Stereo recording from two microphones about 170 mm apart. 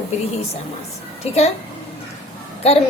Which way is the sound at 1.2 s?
40° left (ahead or behind).